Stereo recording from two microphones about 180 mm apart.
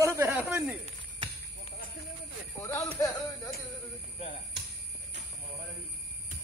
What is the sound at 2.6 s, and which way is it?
Speech, 20° left (ahead or behind).